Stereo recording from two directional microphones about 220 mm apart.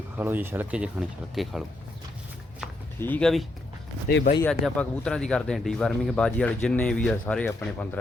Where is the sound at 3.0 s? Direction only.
5° left (ahead or behind).